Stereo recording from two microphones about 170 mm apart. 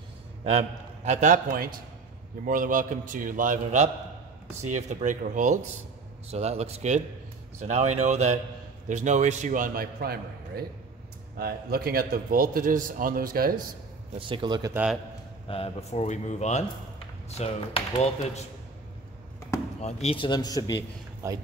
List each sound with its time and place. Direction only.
0.4 s a man's voice: 40° right (ahead or behind)
6.3 s a man's voice: 40° right (ahead or behind); by 13.7 s 60° right (ahead or behind)
14.1 s speech: 30° right (ahead or behind)
14.7 s a man's voice: 5° right (ahead or behind)
15.4 s a man's voice: 35° left (ahead or behind)
19.8 s speech: 35° left (ahead or behind)
21.2 s speech: 15° right (ahead or behind)